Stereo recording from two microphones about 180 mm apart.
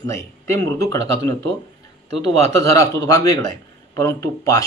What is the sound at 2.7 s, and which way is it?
Speech, 15° left (ahead or behind).